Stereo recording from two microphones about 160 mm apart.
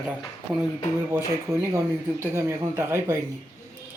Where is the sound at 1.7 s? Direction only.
15° right (ahead or behind).